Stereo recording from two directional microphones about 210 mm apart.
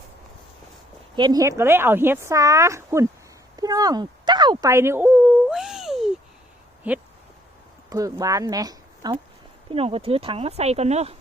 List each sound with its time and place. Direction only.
1.1 s a woman's voice: 20° right (ahead or behind)
3.6 s a sound: 20° right (ahead or behind); by 6.1 s centre (ahead or behind)
6.8 s a woman's voice: 5° right (ahead or behind); by 11.2 s 30° right (ahead or behind)